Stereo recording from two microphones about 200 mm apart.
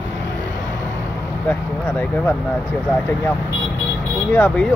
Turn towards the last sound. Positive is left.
turn(degrees=5)  # may be behind; listen again after turning